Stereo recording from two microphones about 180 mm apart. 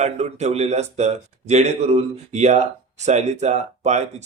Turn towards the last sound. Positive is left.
turn(degrees=-40)  # may be behind; listen again after turning